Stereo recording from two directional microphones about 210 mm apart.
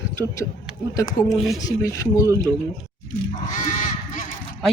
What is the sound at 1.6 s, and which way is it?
Speech, 15° left (ahead or behind).